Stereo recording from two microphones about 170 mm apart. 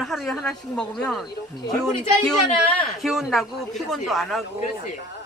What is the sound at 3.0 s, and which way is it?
A man's voice, centre (ahead or behind).